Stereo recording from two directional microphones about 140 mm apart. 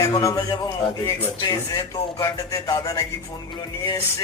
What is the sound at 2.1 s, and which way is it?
Speech, 25° left (ahead or behind).